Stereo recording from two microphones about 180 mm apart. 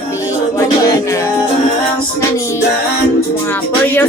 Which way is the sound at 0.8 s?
20° left (ahead or behind).